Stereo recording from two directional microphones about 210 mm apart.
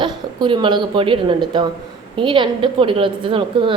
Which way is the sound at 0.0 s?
20° right (ahead or behind).